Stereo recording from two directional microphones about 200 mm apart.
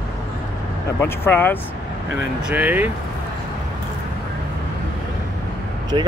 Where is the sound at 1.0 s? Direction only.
10° left (ahead or behind).